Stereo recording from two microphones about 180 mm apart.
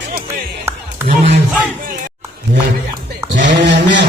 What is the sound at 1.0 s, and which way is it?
Speech, 35° right (ahead or behind).